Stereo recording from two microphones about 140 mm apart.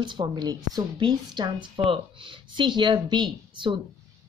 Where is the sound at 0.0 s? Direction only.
35° right (ahead or behind).